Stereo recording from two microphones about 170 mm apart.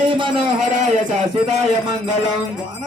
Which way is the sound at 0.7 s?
45° right (ahead or behind).